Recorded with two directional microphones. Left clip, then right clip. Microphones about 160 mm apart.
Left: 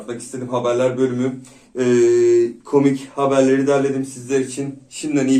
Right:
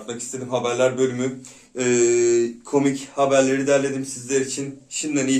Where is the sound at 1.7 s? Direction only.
Centre (ahead or behind).